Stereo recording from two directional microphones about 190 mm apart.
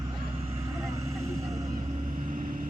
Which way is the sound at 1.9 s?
40° right (ahead or behind).